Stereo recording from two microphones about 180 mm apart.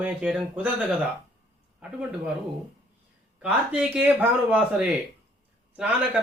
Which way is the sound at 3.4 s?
5° right (ahead or behind).